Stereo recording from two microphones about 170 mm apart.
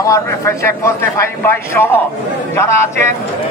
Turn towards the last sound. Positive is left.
turn(degrees=15)  # may be behind; listen again after turning